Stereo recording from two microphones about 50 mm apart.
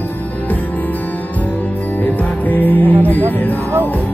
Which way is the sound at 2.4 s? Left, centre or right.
Left.